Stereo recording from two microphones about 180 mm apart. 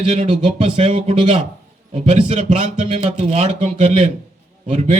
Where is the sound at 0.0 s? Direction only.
40° right (ahead or behind).